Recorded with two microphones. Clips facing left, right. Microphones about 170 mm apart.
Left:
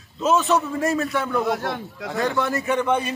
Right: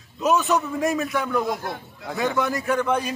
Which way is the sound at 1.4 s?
80° left.